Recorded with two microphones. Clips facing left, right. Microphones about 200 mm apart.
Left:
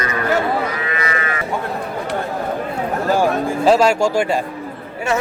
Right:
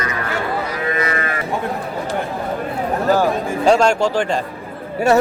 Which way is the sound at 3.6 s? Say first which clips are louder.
Even; 5° left (ahead or behind).